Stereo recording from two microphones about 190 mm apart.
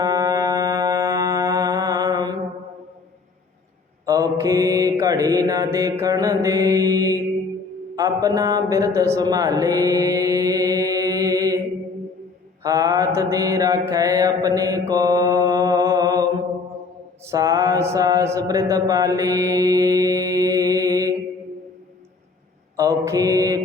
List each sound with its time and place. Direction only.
0.0 s music: 20° right (ahead or behind)
4.0 s mantra: 15° right (ahead or behind)
7.9 s speech: 20° right (ahead or behind)
12.6 s mantra: 15° right (ahead or behind)
17.3 s mantra: 15° right (ahead or behind)
22.8 s mantra: 15° right (ahead or behind)